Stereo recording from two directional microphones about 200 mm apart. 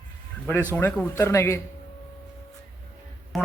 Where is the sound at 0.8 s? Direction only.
10° left (ahead or behind).